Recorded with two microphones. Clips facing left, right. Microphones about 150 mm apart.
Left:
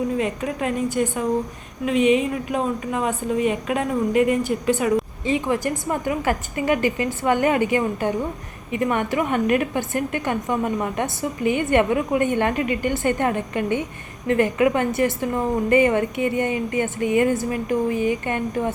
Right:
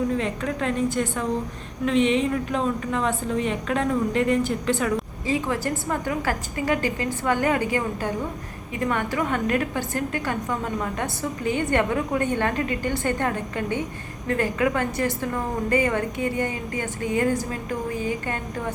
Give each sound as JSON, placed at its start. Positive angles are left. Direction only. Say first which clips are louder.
{"t": 0.2, "sound": "a woman's voice", "louder": "left 2 dB", "side_deg": 15}